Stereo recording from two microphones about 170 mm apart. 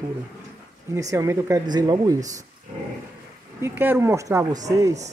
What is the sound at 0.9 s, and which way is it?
Speech, 20° right (ahead or behind).